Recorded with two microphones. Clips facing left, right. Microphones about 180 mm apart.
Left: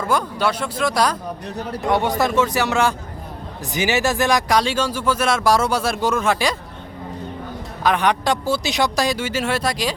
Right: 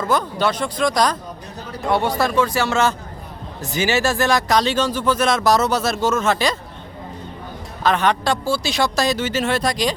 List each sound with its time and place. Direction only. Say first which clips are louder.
0.1 s speech: right 1 dB; 10° left (ahead or behind)
1.9 s speech: even; 15° left (ahead or behind)
7.9 s speech: even; 15° left (ahead or behind)